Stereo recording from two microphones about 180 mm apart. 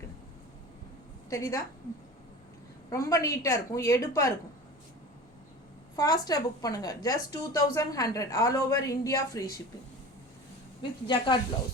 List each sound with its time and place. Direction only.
1.3 s a woman's voice: 15° left (ahead or behind)
2.9 s a woman's voice: 20° left (ahead or behind)
6.0 s a woman's voice: 20° left (ahead or behind)
11.0 s a woman's voice: 25° left (ahead or behind)